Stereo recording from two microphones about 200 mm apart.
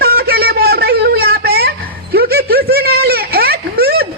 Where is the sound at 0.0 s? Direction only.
50° right (ahead or behind).